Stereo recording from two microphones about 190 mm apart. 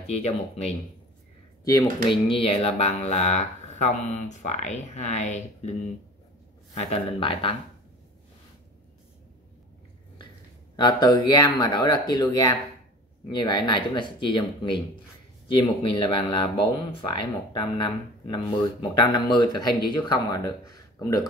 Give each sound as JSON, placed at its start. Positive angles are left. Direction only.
{"t": 0.0, "sound": "speech", "side_deg": 35}
{"t": 1.6, "sound": "speech", "side_deg": 20}
{"t": 6.7, "sound": "speech", "side_deg": 35}
{"t": 10.8, "sound": "speech", "side_deg": 20}